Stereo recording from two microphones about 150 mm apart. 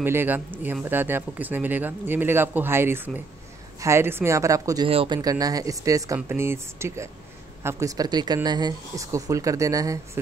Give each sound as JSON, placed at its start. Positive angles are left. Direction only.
{"t": 0.0, "sound": "speech", "side_deg": -15}
{"t": 4.8, "sound": "speech", "side_deg": -35}